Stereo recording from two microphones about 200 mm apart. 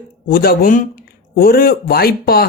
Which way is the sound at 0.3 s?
50° left (ahead or behind).